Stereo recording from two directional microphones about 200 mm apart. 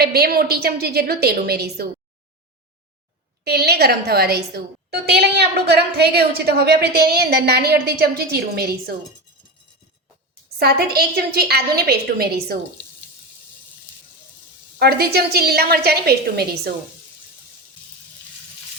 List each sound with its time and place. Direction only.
0.0 s a woman's voice: 50° right (ahead or behind)
3.4 s a woman's voice: 55° right (ahead or behind)
10.6 s a woman's voice: 50° right (ahead or behind)
14.8 s a woman's voice: 50° right (ahead or behind)